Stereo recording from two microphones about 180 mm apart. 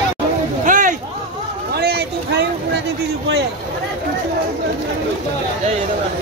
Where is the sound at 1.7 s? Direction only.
65° right (ahead or behind).